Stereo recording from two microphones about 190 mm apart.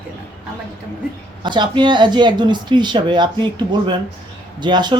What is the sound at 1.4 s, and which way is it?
Speech, 25° right (ahead or behind).